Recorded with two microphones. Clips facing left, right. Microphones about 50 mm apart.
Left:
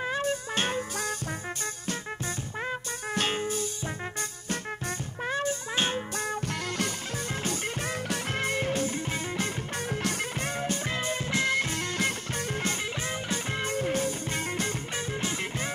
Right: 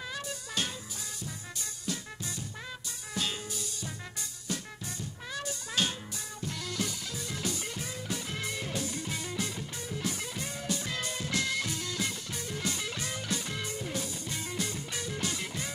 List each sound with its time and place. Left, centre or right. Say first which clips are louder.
0.0 s music: left 10 dB; left
1.9 s music: left 3 dB; left
6.1 s music: left 8 dB; left
10.0 s music: left 5 dB; left
10.6 s music: left 3 dB; left
11.7 s music: left 6 dB; left
13.7 s music: left 8 dB; left
15.1 s music: left 3 dB; left